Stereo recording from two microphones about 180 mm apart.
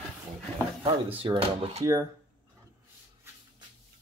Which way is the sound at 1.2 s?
30° right (ahead or behind).